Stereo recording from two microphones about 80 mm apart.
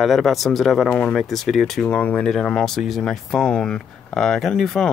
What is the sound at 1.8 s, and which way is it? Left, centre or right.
Speech, centre.